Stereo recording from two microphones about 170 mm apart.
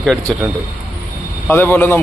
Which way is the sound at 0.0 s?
Centre (ahead or behind).